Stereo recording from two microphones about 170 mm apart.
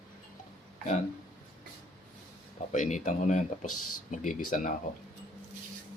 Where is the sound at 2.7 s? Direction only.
45° left (ahead or behind).